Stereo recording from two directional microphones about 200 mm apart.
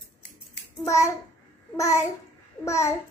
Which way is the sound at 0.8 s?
15° left (ahead or behind).